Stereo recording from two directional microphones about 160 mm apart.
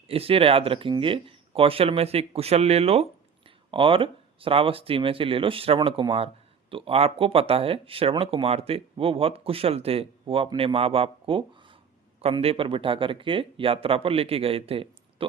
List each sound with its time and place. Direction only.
0.1 s speech: 35° right (ahead or behind)